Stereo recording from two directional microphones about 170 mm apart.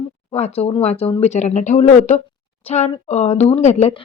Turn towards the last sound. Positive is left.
turn(degrees=40)  # may be behind; listen again after turning